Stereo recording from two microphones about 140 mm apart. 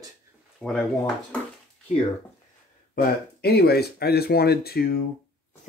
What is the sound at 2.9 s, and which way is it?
Speech, 90° left.